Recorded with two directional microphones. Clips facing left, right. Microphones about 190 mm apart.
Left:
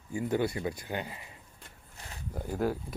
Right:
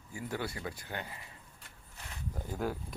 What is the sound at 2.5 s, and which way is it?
Speech, 5° left (ahead or behind).